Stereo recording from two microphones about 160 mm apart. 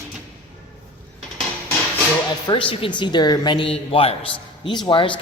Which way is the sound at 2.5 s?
35° left (ahead or behind).